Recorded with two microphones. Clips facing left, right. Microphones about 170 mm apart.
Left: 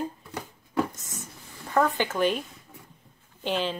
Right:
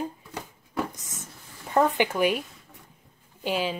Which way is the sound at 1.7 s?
15° right (ahead or behind).